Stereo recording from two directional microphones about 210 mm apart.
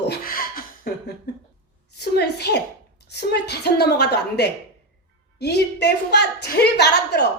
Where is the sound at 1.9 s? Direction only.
50° left (ahead or behind).